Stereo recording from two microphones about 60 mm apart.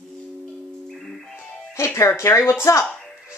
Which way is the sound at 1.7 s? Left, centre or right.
Left.